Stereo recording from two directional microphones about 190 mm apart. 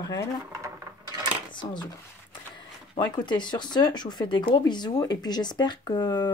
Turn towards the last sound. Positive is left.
turn(degrees=20)  # may be behind; listen again after turning